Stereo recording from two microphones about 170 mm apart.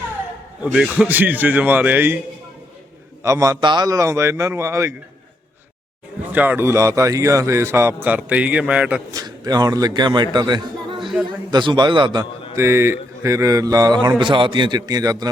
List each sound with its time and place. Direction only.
0.6 s a man's voice: 5° right (ahead or behind)
3.2 s a man's voice: 20° right (ahead or behind)
6.3 s a man's voice: 10° right (ahead or behind)
9.1 s a man's voice: 25° right (ahead or behind)
12.5 s speech: 15° right (ahead or behind)